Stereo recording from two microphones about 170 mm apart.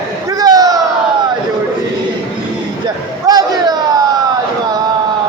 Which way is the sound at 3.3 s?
20° right (ahead or behind).